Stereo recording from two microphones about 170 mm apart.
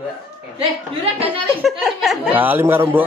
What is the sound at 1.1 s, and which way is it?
Speech, 30° right (ahead or behind).